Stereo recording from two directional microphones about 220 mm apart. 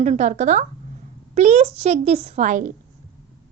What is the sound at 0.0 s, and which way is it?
Speech, 30° right (ahead or behind).